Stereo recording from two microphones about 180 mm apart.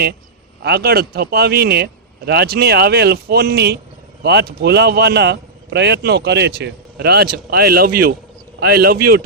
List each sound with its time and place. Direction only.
0.6 s a man's voice: 60° right (ahead or behind)